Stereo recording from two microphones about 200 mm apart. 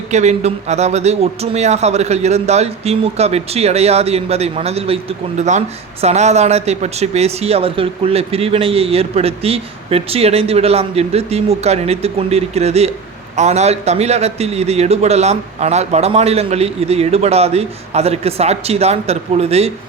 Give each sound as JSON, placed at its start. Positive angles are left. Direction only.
{"t": 0.1, "sound": "speech", "side_deg": -35}